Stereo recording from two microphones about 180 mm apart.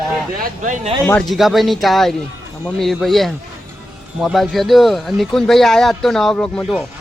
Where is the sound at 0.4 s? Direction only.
45° right (ahead or behind).